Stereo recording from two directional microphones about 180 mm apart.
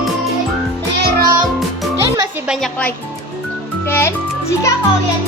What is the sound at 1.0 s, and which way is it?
Music, 55° right (ahead or behind).